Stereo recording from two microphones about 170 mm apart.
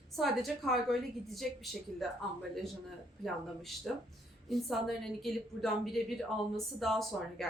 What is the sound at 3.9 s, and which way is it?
A woman's voice, centre (ahead or behind).